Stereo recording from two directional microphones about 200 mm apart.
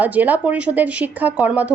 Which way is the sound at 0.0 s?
10° right (ahead or behind).